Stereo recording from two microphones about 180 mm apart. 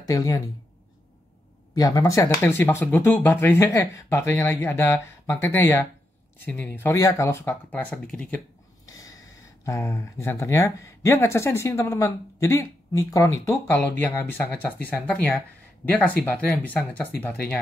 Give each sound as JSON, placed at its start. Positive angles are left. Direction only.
{"t": 0.0, "sound": "speech", "side_deg": 20}
{"t": 1.8, "sound": "speech", "side_deg": 20}
{"t": 8.8, "sound": "snort", "side_deg": 20}
{"t": 9.7, "sound": "speech", "side_deg": 15}